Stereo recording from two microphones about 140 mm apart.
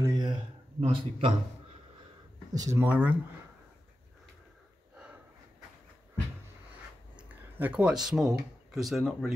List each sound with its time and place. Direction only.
0.0 s a sound: 25° right (ahead or behind)
0.7 s speech: 45° right (ahead or behind)
2.5 s speech: 25° right (ahead or behind)
2.9 s speech: 10° right (ahead or behind)
7.2 s speech: 10° right (ahead or behind)